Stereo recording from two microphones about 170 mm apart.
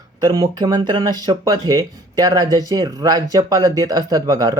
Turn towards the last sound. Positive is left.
turn(degrees=-20)  # may be behind; listen again after turning